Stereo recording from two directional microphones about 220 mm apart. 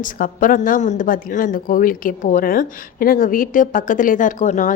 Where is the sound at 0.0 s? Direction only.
40° left (ahead or behind).